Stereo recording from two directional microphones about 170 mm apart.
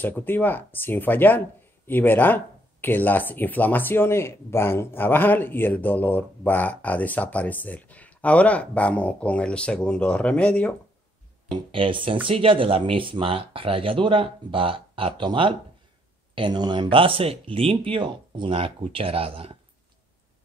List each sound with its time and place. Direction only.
0.0 s speech: 10° left (ahead or behind)
11.5 s speech: 30° right (ahead or behind)